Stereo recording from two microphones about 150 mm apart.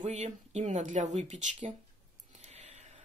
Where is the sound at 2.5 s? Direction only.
45° right (ahead or behind).